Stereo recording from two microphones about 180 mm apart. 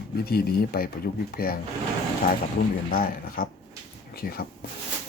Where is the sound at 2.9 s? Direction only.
55° left (ahead or behind).